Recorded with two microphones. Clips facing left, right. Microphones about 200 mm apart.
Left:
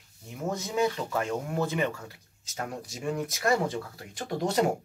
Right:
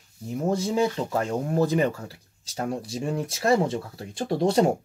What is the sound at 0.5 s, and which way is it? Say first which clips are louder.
Speech: right 4 dB; 30° right (ahead or behind).